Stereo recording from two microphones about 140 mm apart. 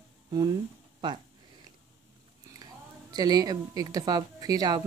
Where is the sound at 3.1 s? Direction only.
25° right (ahead or behind).